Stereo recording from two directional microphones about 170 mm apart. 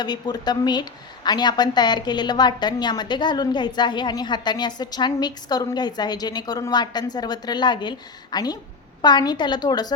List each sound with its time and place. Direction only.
0.0 s a woman's voice: 25° left (ahead or behind)